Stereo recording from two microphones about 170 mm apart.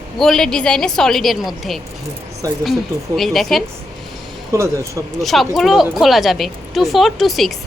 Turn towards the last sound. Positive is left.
turn(degrees=0)  # may be behind; listen again after turning